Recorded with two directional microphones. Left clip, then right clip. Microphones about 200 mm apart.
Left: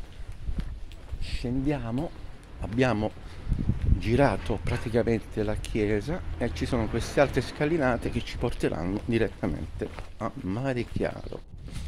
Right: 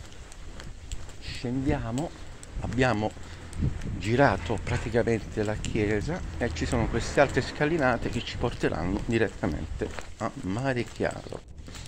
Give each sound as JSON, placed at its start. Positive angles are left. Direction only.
{"t": 1.2, "sound": "speech", "side_deg": 25}
{"t": 3.5, "sound": "speech", "side_deg": -55}
{"t": 4.0, "sound": "speech", "side_deg": 20}